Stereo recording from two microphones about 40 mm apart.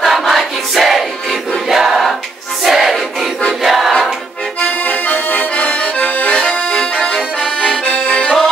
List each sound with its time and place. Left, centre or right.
0.0 s choir: centre
2.6 s music: centre
3.6 s choir: centre
4.8 s accordion: left
5.5 s accordion: left
6.8 s accordion: left